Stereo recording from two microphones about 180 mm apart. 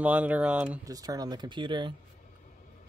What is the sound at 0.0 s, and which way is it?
Speech, 10° right (ahead or behind).